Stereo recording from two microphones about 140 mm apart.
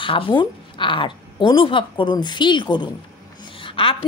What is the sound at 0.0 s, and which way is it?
A woman's voice, 35° left (ahead or behind).